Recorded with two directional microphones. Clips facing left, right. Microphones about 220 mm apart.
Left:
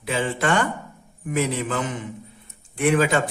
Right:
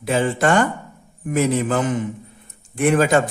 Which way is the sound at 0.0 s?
45° right (ahead or behind).